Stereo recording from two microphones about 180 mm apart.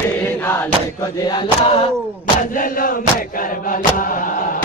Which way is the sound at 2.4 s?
50° left (ahead or behind).